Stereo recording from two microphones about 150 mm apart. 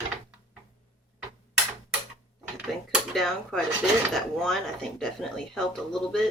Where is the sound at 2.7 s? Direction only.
Centre (ahead or behind).